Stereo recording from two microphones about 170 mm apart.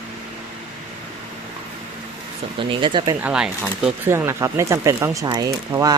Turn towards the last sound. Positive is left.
turn(degrees=-20)  # may be behind; listen again after turning